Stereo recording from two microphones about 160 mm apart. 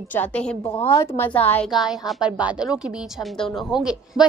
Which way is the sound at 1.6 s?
Centre (ahead or behind).